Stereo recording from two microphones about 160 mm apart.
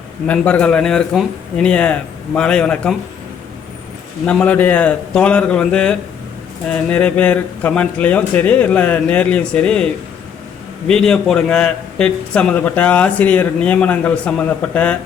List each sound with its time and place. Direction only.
0.3 s a man's voice: 10° left (ahead or behind)
4.3 s a man's voice: 10° left (ahead or behind)